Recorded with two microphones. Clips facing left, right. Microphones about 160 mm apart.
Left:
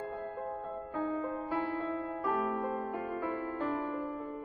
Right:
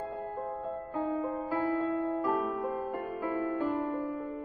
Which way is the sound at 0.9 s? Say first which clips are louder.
Right 2 dB; 5° right (ahead or behind).